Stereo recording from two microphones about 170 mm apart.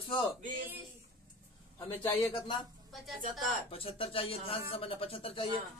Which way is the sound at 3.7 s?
35° left (ahead or behind).